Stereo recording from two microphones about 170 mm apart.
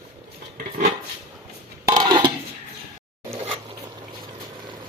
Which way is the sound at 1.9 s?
25° right (ahead or behind).